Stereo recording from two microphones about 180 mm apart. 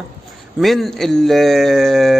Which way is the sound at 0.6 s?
Centre (ahead or behind).